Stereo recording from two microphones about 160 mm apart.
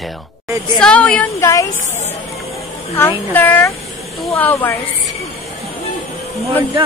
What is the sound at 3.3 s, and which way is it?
A woman's voice, 15° left (ahead or behind).